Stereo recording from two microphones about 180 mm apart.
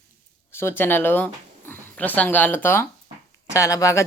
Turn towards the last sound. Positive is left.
turn(degrees=20)  # may be behind; listen again after turning